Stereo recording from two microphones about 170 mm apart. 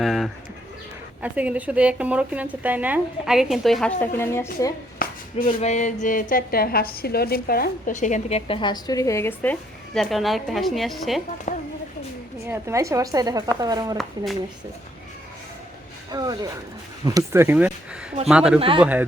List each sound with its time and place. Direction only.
0.0 s bird: centre (ahead or behind)
1.2 s a woman's voice: 10° right (ahead or behind)
4.0 s a woman's voice: 15° left (ahead or behind)
4.9 s a sound: 60° left (ahead or behind)
5.5 s a woman's voice: 40° left (ahead or behind); by 11.2 s centre (ahead or behind)
11.5 s a sound: 45° left (ahead or behind)
12.5 s a woman's voice: 15° right (ahead or behind)
16.1 s a woman's voice: 20° right (ahead or behind)